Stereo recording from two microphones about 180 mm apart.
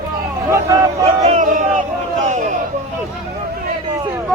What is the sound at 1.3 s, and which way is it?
Speech, 45° right (ahead or behind).